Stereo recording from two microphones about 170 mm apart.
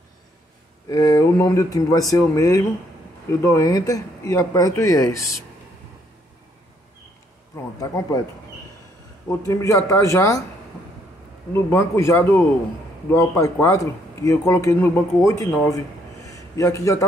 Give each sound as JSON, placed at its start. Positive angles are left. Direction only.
{"t": 0.8, "sound": "speech", "side_deg": 20}
{"t": 7.5, "sound": "speech", "side_deg": 20}
{"t": 9.3, "sound": "speech", "side_deg": 20}
{"t": 11.5, "sound": "speech", "side_deg": 15}
{"t": 16.3, "sound": "a sound", "side_deg": 20}